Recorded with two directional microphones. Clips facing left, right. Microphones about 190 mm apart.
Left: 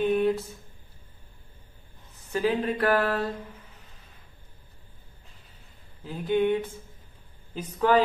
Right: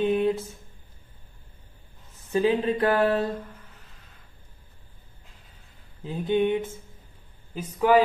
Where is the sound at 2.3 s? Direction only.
25° right (ahead or behind).